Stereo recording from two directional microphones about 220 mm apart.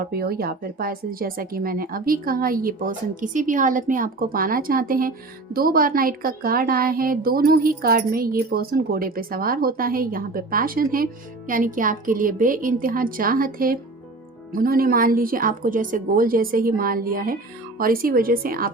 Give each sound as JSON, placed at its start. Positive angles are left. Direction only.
{"t": 0.0, "sound": "a woman's voice", "side_deg": -45}